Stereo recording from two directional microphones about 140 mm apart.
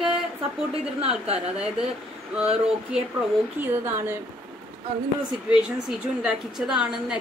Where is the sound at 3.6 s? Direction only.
15° right (ahead or behind).